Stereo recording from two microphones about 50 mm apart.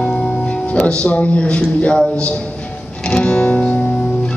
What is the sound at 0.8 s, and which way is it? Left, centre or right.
Speech, left.